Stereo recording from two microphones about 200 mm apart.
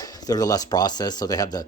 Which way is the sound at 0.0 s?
20° left (ahead or behind).